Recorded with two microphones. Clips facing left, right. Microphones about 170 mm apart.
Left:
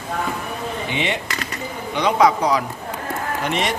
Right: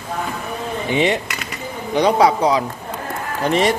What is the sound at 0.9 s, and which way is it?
A man's voice, 40° right (ahead or behind).